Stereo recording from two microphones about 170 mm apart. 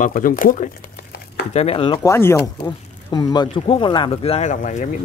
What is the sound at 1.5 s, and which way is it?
Speech, 35° left (ahead or behind).